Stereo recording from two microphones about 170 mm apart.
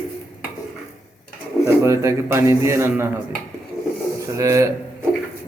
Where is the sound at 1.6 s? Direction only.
15° right (ahead or behind).